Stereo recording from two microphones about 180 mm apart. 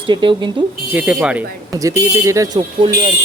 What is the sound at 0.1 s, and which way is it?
Speech, 25° right (ahead or behind).